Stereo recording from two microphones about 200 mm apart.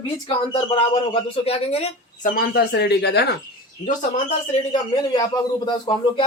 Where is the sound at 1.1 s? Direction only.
30° left (ahead or behind).